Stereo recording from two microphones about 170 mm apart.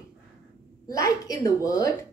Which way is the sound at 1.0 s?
20° left (ahead or behind).